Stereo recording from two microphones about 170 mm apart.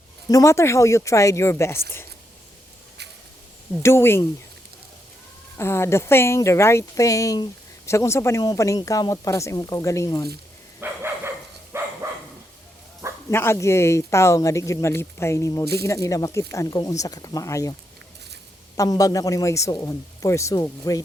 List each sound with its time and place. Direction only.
0.3 s speech: 20° left (ahead or behind)
3.8 s speech: 15° left (ahead or behind)
5.5 s speech: 15° left (ahead or behind)
10.8 s dog: 15° right (ahead or behind)
13.3 s speech: 15° left (ahead or behind)
18.8 s speech: 20° left (ahead or behind)